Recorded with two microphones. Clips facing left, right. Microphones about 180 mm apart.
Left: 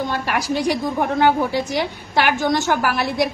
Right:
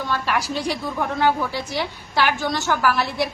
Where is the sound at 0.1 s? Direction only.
15° left (ahead or behind).